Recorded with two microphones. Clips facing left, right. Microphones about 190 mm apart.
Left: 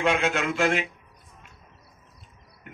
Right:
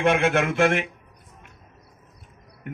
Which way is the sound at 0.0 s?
55° right (ahead or behind).